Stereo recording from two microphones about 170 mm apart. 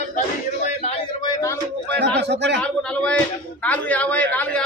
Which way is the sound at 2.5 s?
5° left (ahead or behind).